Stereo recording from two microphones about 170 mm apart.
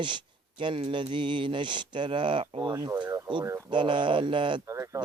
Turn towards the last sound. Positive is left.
turn(degrees=-15)  # may be behind; listen again after turning